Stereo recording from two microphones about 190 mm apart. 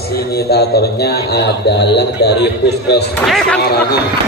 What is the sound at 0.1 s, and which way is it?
A man's voice, 55° left (ahead or behind).